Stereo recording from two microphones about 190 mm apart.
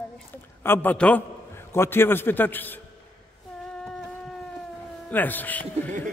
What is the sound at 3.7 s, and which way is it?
Music, 5° left (ahead or behind).